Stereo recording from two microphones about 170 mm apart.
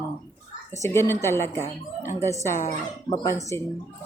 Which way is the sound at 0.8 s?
15° left (ahead or behind).